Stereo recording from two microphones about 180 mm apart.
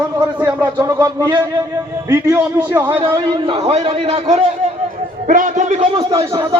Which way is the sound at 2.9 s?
25° right (ahead or behind).